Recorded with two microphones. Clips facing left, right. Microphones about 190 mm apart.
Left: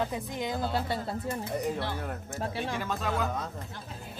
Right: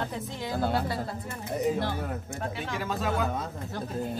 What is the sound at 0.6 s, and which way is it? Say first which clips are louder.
Speech: right 5 dB; 55° right (ahead or behind).